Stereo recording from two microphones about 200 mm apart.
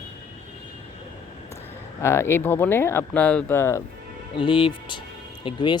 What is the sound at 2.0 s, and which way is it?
Speech, 15° left (ahead or behind).